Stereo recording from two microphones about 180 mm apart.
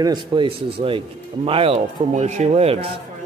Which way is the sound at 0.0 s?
25° right (ahead or behind).